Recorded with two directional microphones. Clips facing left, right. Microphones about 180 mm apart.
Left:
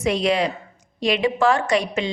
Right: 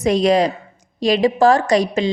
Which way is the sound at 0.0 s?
40° right (ahead or behind).